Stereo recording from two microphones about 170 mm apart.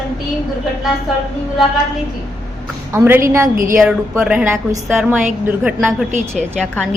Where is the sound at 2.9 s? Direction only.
15° right (ahead or behind).